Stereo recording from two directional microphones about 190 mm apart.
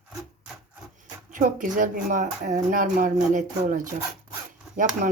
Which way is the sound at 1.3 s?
45° right (ahead or behind).